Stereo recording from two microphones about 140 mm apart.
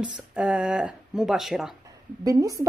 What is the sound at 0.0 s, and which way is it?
Speech, 10° right (ahead or behind).